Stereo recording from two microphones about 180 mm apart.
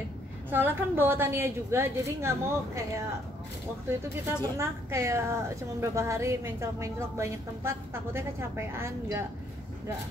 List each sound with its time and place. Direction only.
0.5 s a woman's voice: 10° right (ahead or behind)
4.4 s a woman's voice: 15° right (ahead or behind)